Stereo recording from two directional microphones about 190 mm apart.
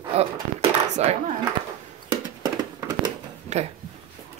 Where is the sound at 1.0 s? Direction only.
35° right (ahead or behind).